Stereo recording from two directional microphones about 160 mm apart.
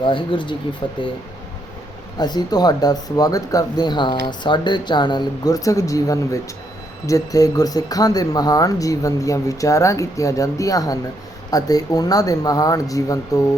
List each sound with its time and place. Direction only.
0.0 s speech: 30° left (ahead or behind)
2.1 s speech: 25° left (ahead or behind)